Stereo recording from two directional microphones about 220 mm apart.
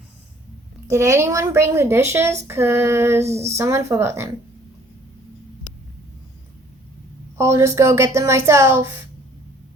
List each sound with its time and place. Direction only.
0.9 s a woman's voice: 10° right (ahead or behind)
7.3 s a woman's voice: 10° right (ahead or behind)